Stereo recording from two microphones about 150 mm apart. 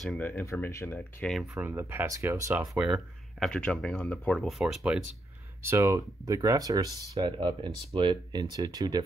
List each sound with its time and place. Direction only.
0.0 s speech: centre (ahead or behind)
0.3 s speech: 15° left (ahead or behind)
1.2 s speech: centre (ahead or behind)
1.5 s speech: 15° right (ahead or behind)
2.8 s speech: centre (ahead or behind)
5.7 s speech: 20° right (ahead or behind)